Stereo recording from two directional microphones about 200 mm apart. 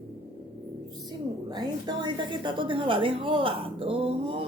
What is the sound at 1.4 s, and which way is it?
Speech, 20° right (ahead or behind).